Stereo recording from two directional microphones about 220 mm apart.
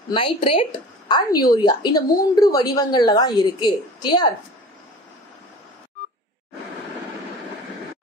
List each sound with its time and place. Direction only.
0.1 s a woman's voice: 25° left (ahead or behind)